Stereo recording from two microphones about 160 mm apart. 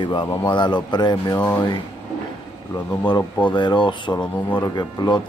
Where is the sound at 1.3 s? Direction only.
10° left (ahead or behind).